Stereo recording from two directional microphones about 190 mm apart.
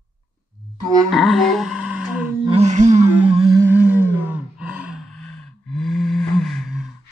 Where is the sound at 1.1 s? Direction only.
Centre (ahead or behind).